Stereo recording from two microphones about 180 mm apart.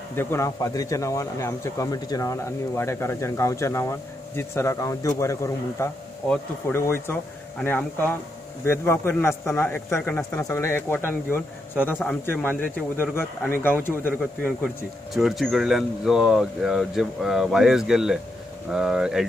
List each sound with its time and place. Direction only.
0.1 s a man's voice: 15° left (ahead or behind)
15.1 s speech: centre (ahead or behind)